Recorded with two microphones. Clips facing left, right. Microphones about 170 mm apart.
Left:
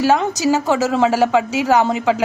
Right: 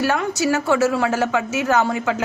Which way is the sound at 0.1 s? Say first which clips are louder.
Left 4 dB; 20° left (ahead or behind).